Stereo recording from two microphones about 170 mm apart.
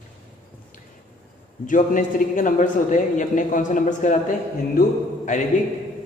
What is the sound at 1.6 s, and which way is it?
Speech, 50° left (ahead or behind).